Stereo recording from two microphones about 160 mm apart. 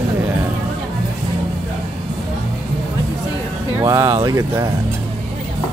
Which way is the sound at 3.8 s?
20° right (ahead or behind).